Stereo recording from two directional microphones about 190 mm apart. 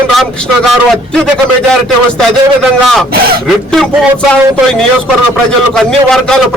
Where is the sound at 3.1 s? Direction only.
50° right (ahead or behind).